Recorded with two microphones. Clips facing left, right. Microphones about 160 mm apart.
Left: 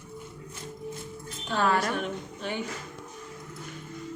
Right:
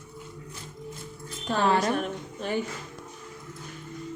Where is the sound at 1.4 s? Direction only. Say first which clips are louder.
Right 2 dB; 30° right (ahead or behind).